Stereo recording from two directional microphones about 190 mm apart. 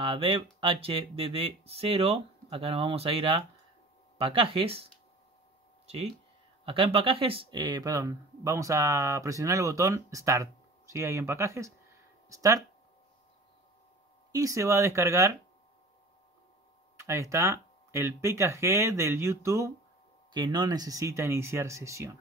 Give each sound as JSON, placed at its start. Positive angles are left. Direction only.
{"t": 0.0, "sound": "speech", "side_deg": -25}
{"t": 6.6, "sound": "speech", "side_deg": -30}
{"t": 14.3, "sound": "speech", "side_deg": -15}
{"t": 17.0, "sound": "speech", "side_deg": -15}